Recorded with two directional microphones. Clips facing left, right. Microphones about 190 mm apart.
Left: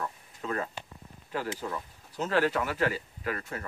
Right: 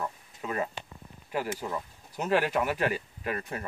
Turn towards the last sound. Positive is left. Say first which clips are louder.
# right 1 dB
turn(degrees=-20)  # may be behind; listen again after turning